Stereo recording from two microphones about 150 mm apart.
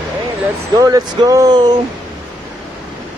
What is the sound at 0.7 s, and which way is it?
Speech, 25° right (ahead or behind).